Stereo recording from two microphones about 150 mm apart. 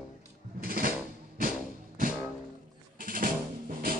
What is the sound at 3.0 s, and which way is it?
Music, 65° right (ahead or behind).